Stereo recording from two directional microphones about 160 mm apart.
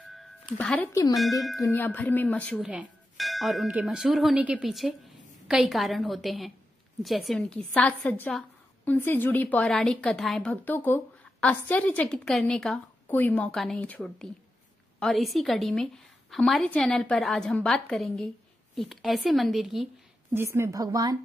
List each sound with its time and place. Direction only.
0.6 s a woman's voice: 10° left (ahead or behind)
1.6 s a woman's voice: 15° left (ahead or behind)
2.6 s a sound: 5° right (ahead or behind)
3.7 s a woman's voice: 5° right (ahead or behind)
8.3 s a sound: centre (ahead or behind)
8.9 s a woman's voice: 10° left (ahead or behind)
20.3 s speech: 15° right (ahead or behind)